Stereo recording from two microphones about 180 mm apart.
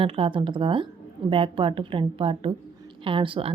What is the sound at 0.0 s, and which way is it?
A woman's voice, 30° right (ahead or behind).